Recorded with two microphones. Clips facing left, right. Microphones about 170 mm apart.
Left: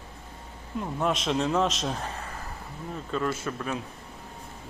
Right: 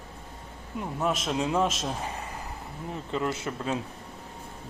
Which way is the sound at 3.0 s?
20° right (ahead or behind).